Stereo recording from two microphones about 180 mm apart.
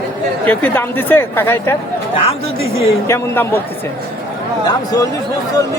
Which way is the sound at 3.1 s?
10° left (ahead or behind).